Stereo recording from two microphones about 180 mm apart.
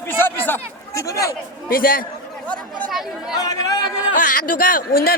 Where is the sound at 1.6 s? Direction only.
50° left (ahead or behind).